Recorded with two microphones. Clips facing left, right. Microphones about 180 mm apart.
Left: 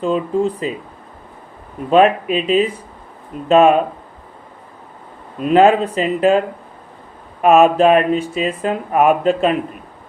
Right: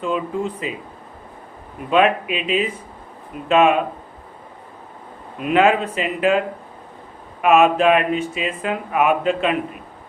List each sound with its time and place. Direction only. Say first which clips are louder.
0.0 s speech: left 6 dB; 35° left (ahead or behind)
1.9 s speech: left 4 dB; 35° left (ahead or behind)
5.4 s speech: left 5 dB; 35° left (ahead or behind)
7.4 s speech: left 4 dB; 35° left (ahead or behind)